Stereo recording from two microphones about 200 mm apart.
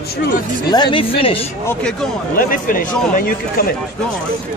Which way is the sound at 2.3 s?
45° left (ahead or behind).